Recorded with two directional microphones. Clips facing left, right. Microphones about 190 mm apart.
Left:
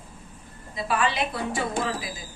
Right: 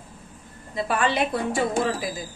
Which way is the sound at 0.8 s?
50° right (ahead or behind).